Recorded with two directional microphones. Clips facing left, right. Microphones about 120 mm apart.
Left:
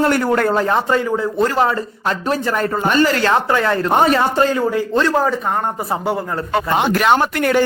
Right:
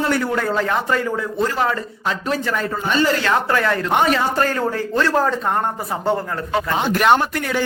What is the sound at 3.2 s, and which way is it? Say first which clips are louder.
Speech: left 3 dB; 25° left (ahead or behind).